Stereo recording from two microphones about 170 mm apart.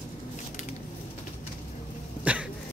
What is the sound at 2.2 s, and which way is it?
Cough, 5° right (ahead or behind).